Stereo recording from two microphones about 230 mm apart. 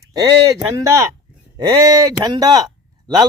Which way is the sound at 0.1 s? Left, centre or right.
Centre.